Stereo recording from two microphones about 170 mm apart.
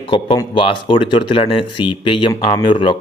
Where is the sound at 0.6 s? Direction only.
30° left (ahead or behind).